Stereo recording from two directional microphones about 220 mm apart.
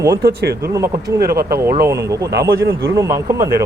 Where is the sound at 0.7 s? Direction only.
15° right (ahead or behind).